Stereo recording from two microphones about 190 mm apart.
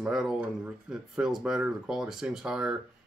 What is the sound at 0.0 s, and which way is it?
Speech, centre (ahead or behind).